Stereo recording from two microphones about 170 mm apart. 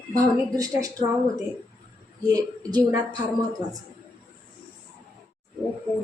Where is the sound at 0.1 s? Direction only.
20° right (ahead or behind).